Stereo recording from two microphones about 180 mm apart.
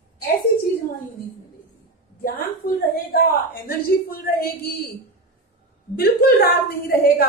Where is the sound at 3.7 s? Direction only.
55° left (ahead or behind).